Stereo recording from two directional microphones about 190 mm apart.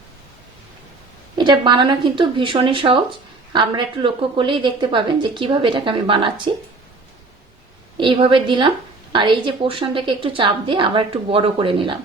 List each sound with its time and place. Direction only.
1.4 s speech: 25° right (ahead or behind)
7.9 s speech: 25° right (ahead or behind)